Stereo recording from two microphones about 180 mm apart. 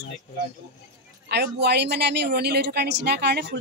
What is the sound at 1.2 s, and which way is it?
Speech, 65° right (ahead or behind).